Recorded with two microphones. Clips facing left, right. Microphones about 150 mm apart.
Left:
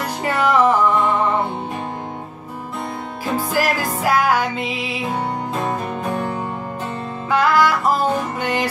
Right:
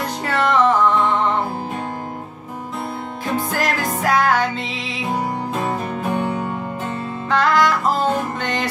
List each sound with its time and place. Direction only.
0.2 s music: 10° left (ahead or behind)
3.3 s music: 10° left (ahead or behind)
6.0 s music: 5° right (ahead or behind)
7.2 s music: 10° left (ahead or behind)